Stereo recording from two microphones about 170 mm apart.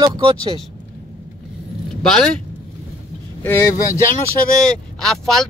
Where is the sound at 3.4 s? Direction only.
15° left (ahead or behind).